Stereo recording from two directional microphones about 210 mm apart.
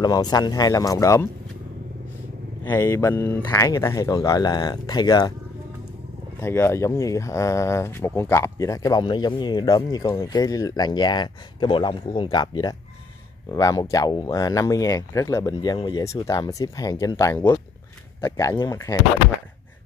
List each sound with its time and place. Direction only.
0.0 s speech: 20° left (ahead or behind)
2.6 s speech: 10° left (ahead or behind)
6.4 s speech: 10° left (ahead or behind)